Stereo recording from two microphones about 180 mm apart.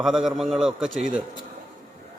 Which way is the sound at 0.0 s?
Centre (ahead or behind).